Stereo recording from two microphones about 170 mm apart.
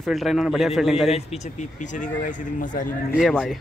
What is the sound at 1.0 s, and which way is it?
Speech, 40° left (ahead or behind).